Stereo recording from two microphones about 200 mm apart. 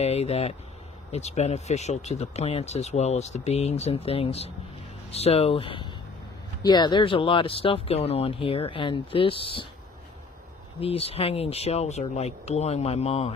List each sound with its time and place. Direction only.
0.0 s speech: 30° left (ahead or behind)
10.8 s speech: 30° left (ahead or behind)